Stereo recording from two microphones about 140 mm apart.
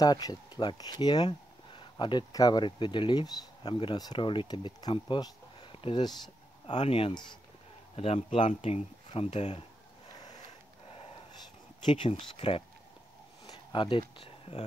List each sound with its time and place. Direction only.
0.0 s speech: 30° left (ahead or behind)
6.7 s speech: 45° left (ahead or behind)
11.8 s speech: 35° left (ahead or behind)
13.5 s a sound: 35° left (ahead or behind)